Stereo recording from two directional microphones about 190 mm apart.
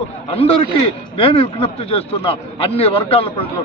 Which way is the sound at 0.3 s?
30° left (ahead or behind).